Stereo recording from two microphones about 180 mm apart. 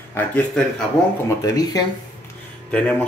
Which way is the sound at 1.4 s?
20° left (ahead or behind).